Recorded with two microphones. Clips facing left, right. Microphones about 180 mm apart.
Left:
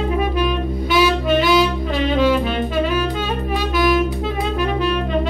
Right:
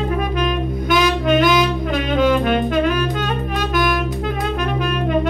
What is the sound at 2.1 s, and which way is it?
Music, 5° left (ahead or behind).